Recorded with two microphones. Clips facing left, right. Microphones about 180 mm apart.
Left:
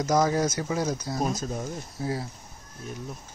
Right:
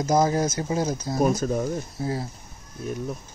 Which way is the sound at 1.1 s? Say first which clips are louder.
Right 6 dB; 60° right (ahead or behind).